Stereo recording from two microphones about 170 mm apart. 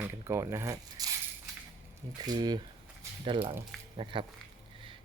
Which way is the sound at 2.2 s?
25° right (ahead or behind).